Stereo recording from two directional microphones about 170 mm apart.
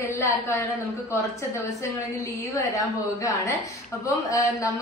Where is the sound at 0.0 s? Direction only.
15° left (ahead or behind).